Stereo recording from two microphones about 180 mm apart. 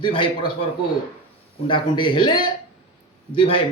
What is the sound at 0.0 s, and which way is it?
A man's voice, 25° left (ahead or behind).